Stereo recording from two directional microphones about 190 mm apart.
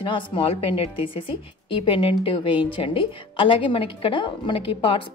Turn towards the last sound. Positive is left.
turn(degrees=25)  # may be behind; listen again after turning